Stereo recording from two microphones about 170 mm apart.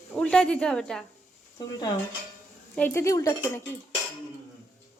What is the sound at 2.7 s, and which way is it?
Speech, 15° left (ahead or behind).